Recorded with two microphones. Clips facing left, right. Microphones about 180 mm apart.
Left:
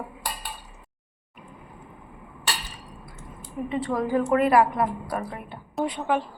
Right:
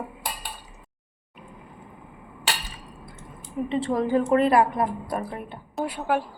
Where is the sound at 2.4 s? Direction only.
25° right (ahead or behind).